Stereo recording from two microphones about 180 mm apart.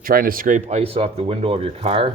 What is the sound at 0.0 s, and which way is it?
Speech, 50° right (ahead or behind).